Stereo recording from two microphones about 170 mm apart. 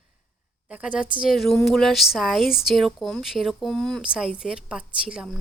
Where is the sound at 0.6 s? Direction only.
5° right (ahead or behind).